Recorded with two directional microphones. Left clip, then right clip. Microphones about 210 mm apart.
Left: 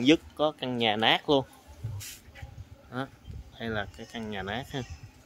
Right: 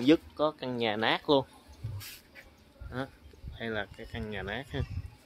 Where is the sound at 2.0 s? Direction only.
10° right (ahead or behind).